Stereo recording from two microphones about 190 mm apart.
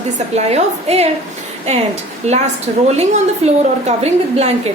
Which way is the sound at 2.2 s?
35° right (ahead or behind).